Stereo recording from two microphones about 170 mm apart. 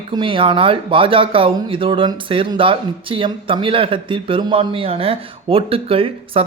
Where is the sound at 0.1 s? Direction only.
30° right (ahead or behind).